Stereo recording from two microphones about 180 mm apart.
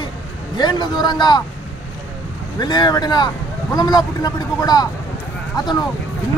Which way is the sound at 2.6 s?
25° left (ahead or behind).